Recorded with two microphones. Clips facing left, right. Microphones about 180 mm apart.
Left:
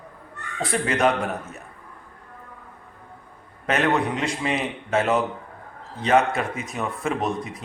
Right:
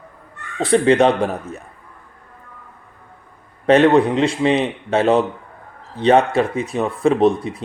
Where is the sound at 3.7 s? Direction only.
30° right (ahead or behind).